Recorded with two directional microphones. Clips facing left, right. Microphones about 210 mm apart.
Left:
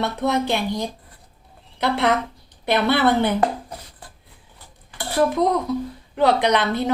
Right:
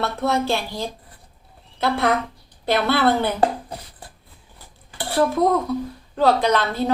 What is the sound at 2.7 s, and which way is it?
Speech, 20° left (ahead or behind).